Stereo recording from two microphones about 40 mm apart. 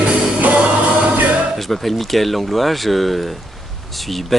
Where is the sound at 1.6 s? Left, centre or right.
Centre.